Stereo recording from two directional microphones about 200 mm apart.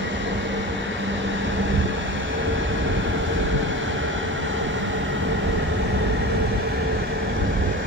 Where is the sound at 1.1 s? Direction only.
70° right (ahead or behind).